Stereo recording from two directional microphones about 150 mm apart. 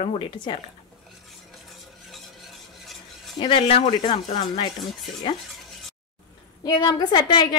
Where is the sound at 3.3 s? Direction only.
35° left (ahead or behind).